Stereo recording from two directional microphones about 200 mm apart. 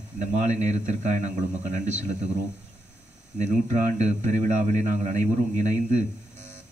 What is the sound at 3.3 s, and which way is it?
Speech, 35° right (ahead or behind).